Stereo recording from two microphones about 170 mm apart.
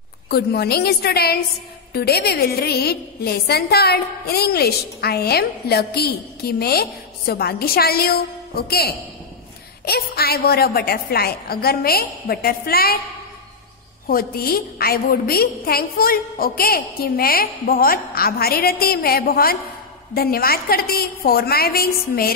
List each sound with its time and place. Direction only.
0.3 s a woman's voice: 70° left (ahead or behind)
14.0 s a woman's voice: 60° left (ahead or behind)